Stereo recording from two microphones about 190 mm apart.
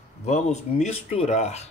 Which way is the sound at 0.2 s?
35° left (ahead or behind).